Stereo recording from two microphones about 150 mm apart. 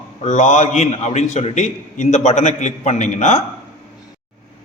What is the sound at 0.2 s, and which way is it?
Speech, 55° left (ahead or behind).